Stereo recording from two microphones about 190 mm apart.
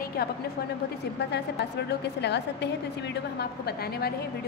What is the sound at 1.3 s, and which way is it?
A woman's voice, 60° left (ahead or behind).